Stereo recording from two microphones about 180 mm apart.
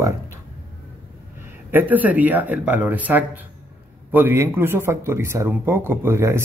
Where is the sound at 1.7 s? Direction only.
10° right (ahead or behind).